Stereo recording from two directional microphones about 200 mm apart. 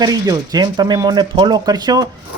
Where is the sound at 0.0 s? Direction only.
20° right (ahead or behind).